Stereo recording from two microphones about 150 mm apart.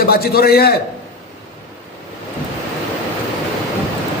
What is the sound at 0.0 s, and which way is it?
Speech, 90° left.